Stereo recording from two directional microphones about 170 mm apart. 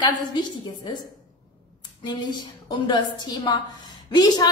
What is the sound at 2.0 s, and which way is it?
A woman's voice, 25° left (ahead or behind).